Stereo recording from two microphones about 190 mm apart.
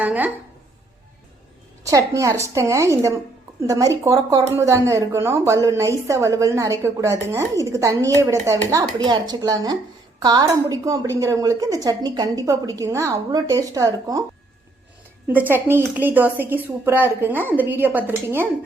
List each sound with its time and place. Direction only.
0.0 s a woman's voice: 10° right (ahead or behind)
1.8 s speech: 15° right (ahead or behind)
15.3 s speech: 10° right (ahead or behind)